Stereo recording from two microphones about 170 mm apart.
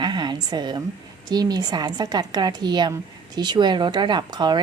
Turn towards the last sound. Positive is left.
turn(degrees=-25)  # may be behind; listen again after turning